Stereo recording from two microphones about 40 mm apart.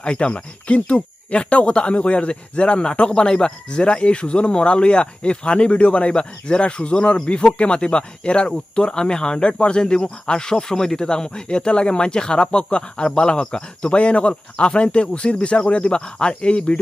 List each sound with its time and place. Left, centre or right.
0.0 s speech: left